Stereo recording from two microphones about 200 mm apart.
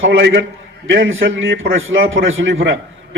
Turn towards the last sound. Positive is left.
turn(degrees=-70)  # may be behind; listen again after turning